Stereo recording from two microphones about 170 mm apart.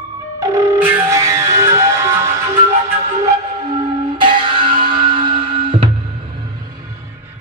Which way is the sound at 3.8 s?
25° right (ahead or behind).